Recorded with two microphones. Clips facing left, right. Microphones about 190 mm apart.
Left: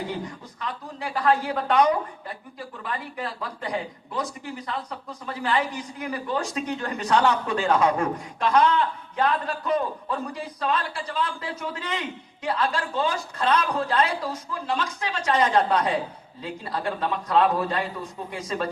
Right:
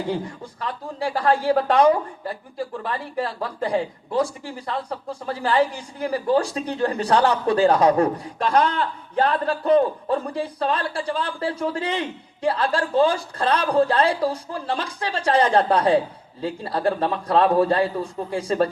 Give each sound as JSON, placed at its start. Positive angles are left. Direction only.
{"t": 0.1, "sound": "speech", "side_deg": -30}